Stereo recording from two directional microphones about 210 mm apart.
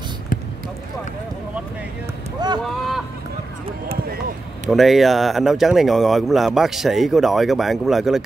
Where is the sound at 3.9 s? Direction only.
45° right (ahead or behind).